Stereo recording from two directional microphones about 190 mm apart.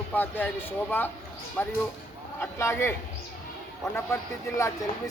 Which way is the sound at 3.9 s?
15° left (ahead or behind).